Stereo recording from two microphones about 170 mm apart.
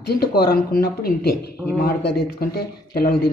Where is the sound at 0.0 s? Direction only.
65° left (ahead or behind).